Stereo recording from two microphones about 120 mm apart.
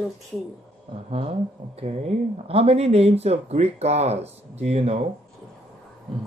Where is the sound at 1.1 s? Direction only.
55° right (ahead or behind).